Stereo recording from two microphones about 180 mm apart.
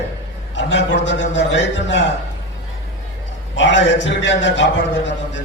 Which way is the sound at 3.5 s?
90° left.